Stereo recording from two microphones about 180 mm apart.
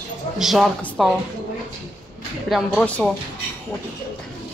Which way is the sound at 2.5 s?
5° left (ahead or behind).